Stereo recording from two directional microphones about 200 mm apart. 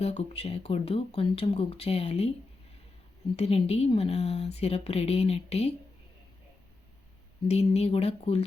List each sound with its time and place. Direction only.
0.0 s speech: 30° left (ahead or behind)
3.3 s speech: 30° left (ahead or behind)
7.4 s speech: 30° left (ahead or behind)